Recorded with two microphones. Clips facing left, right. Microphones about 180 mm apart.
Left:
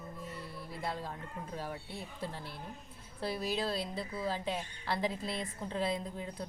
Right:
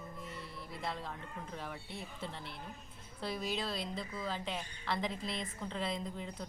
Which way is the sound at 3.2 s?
5° left (ahead or behind).